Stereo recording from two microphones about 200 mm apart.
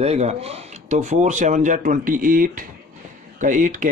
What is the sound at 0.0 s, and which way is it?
Speech, 30° right (ahead or behind).